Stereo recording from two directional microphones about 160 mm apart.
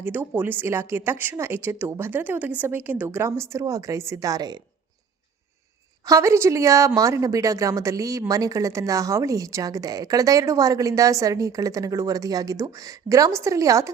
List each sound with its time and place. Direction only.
0.0 s a woman's voice: 10° right (ahead or behind)
6.1 s a woman's voice: 20° right (ahead or behind)